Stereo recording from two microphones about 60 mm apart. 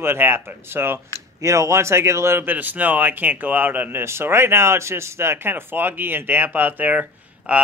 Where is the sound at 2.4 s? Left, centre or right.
Right.